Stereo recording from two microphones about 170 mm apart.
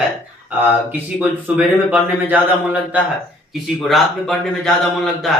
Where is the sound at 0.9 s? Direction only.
10° right (ahead or behind).